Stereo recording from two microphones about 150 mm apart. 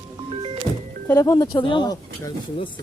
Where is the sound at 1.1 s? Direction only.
20° left (ahead or behind).